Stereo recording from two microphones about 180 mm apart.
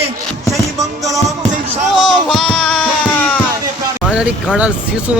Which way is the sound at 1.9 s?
Centre (ahead or behind).